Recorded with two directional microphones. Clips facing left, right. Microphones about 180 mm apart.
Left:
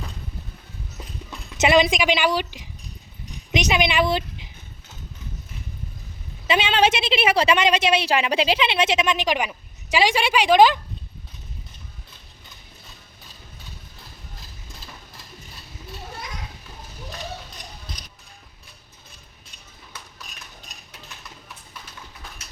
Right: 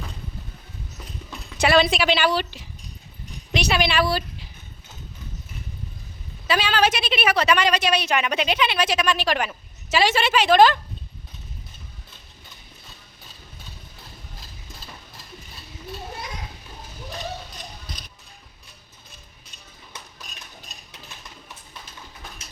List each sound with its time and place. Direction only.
1.5 s a woman's voice: 20° left (ahead or behind)
6.5 s a woman's voice: 25° left (ahead or behind)